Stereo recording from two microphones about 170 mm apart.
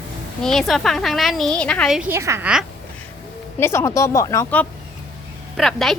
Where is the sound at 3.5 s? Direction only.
15° left (ahead or behind).